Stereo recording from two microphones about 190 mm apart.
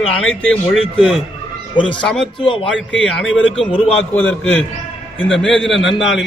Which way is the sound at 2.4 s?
25° left (ahead or behind).